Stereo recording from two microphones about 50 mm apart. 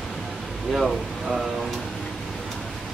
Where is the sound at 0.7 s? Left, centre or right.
Centre.